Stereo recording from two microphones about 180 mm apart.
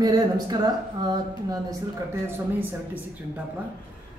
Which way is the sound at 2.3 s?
10° right (ahead or behind).